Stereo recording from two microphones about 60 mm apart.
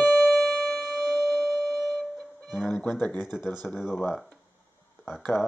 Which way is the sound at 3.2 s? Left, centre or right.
Centre.